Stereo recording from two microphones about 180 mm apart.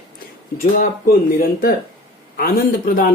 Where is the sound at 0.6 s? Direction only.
50° left (ahead or behind).